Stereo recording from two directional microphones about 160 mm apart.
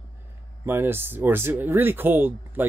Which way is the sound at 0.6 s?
15° right (ahead or behind).